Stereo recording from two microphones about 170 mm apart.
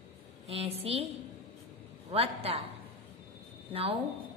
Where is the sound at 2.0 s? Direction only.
35° right (ahead or behind).